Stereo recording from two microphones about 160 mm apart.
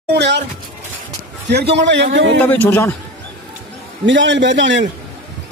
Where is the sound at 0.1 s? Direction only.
90° right.